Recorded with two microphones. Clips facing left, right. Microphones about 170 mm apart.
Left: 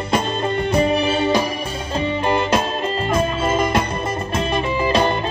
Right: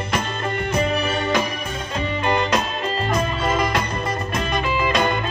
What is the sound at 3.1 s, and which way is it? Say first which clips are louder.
Music: left 4 dB; 25° left (ahead or behind).